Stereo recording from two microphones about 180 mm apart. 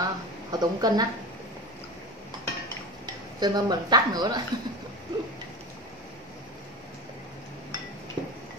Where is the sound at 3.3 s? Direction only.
20° right (ahead or behind).